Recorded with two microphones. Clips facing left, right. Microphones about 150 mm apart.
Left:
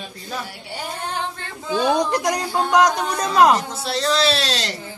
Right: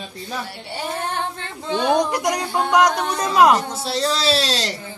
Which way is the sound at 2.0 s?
10° right (ahead or behind).